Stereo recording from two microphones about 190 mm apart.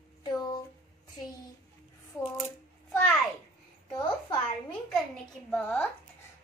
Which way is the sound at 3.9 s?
25° left (ahead or behind).